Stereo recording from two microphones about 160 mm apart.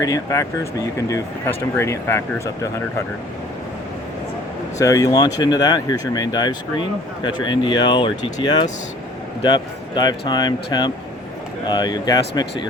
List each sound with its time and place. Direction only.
0.0 s speech: 20° left (ahead or behind)
4.8 s speech: 20° left (ahead or behind)